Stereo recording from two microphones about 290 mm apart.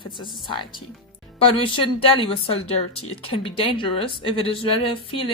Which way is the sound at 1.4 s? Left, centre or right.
Centre.